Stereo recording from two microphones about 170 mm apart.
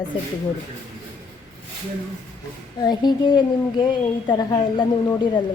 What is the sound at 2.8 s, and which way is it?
A woman's voice, 25° left (ahead or behind).